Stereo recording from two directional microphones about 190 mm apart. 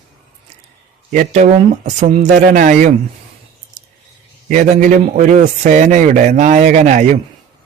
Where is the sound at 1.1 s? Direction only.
40° right (ahead or behind).